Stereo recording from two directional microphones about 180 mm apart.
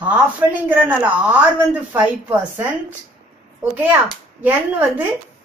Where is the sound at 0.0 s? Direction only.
10° right (ahead or behind).